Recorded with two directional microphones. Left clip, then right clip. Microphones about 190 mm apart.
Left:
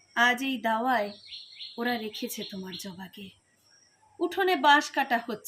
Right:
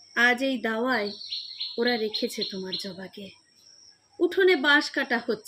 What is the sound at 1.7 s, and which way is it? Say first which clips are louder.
Speech: right 5 dB; 10° left (ahead or behind).